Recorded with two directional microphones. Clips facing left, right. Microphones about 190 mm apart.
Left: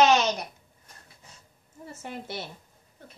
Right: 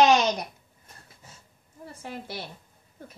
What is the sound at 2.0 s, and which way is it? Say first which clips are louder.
Speech: even; centre (ahead or behind).